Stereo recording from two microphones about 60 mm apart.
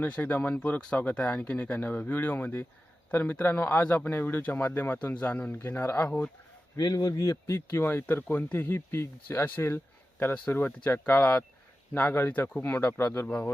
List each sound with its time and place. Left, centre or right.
0.0 s a man's voice: left
6.9 s speech: left
7.8 s a man's voice: left
11.2 s a man's voice: left